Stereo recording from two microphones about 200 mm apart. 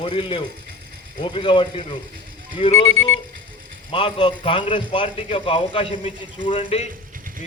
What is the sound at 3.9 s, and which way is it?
A man's voice, 25° left (ahead or behind).